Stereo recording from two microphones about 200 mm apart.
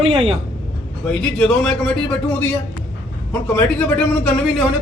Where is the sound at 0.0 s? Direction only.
30° right (ahead or behind).